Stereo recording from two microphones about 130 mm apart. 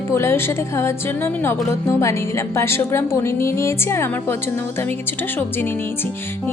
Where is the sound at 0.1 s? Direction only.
20° left (ahead or behind).